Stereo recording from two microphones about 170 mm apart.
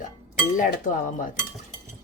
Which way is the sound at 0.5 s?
50° left (ahead or behind).